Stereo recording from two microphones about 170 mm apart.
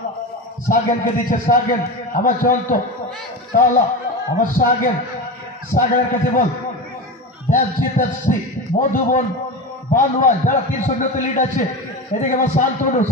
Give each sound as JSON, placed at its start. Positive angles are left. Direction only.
{"t": 0.7, "sound": "a man's voice", "side_deg": 50}
{"t": 7.4, "sound": "a man's voice", "side_deg": 50}